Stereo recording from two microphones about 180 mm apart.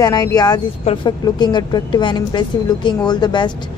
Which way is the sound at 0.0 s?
20° left (ahead or behind).